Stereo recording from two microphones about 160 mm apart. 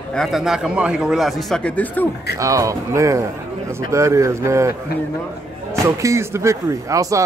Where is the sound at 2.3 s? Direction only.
20° right (ahead or behind).